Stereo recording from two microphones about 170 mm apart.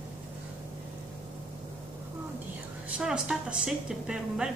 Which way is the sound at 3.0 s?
5° right (ahead or behind).